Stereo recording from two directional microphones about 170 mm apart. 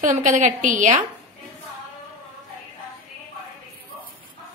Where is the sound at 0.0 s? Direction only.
50° right (ahead or behind).